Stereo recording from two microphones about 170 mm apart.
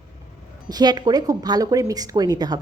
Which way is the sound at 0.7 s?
25° right (ahead or behind).